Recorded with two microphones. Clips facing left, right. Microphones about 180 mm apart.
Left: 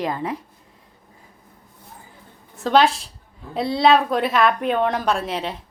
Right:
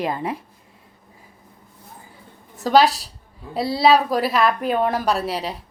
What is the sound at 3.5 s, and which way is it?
Speech, 5° right (ahead or behind).